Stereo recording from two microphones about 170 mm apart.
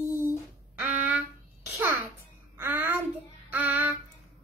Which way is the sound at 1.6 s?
10° right (ahead or behind).